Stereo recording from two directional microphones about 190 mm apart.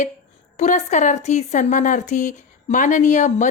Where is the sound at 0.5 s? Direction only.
40° left (ahead or behind).